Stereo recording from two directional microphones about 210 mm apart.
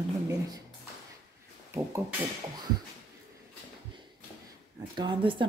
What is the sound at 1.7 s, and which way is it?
Beatboxing, 15° right (ahead or behind).